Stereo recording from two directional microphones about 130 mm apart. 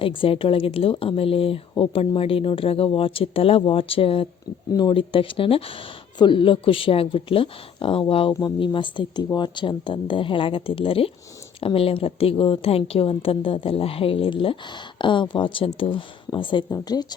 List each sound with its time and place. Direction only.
0.0 s a woman's voice: 40° left (ahead or behind)
16.6 s speech: 30° left (ahead or behind)